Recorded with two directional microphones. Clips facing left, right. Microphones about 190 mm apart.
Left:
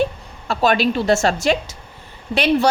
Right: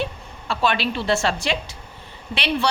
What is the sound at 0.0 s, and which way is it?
A woman's voice, 45° left (ahead or behind).